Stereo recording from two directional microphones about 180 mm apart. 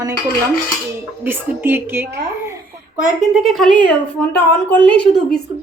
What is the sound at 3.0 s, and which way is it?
A woman's voice, centre (ahead or behind).